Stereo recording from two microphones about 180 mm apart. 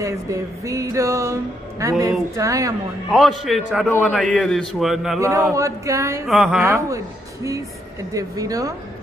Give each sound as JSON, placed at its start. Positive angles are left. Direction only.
{"t": 0.0, "sound": "speech", "side_deg": -15}
{"t": 3.1, "sound": "a man's voice", "side_deg": 0}
{"t": 5.2, "sound": "speech", "side_deg": -15}
{"t": 6.2, "sound": "a man's voice", "side_deg": 0}
{"t": 6.6, "sound": "speech", "side_deg": -15}
{"t": 8.1, "sound": "a woman's voice", "side_deg": -20}